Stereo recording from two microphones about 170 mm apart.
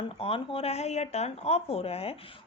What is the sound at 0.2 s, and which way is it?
A woman's voice, 35° left (ahead or behind).